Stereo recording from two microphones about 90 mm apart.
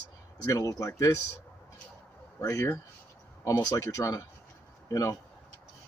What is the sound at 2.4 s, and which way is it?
Speech, 40° left (ahead or behind).